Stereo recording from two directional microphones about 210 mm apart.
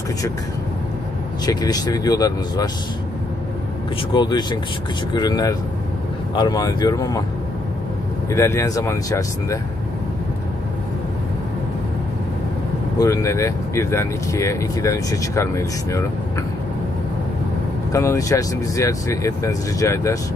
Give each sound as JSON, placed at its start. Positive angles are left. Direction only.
{"t": 1.4, "sound": "speech", "side_deg": 20}
{"t": 4.1, "sound": "speech", "side_deg": 20}
{"t": 8.3, "sound": "speech", "side_deg": 15}
{"t": 13.0, "sound": "speech", "side_deg": 15}
{"t": 17.9, "sound": "speech", "side_deg": 15}